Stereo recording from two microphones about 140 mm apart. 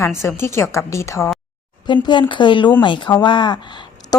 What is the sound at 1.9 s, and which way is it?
A woman's voice, 35° left (ahead or behind).